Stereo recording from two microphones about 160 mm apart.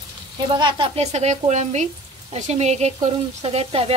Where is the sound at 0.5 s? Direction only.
30° right (ahead or behind).